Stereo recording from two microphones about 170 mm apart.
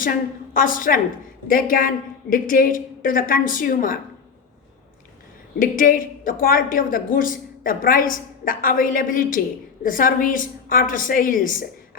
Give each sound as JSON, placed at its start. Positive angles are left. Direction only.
{"t": 0.0, "sound": "a woman's voice", "side_deg": 55}
{"t": 5.5, "sound": "a woman's voice", "side_deg": 55}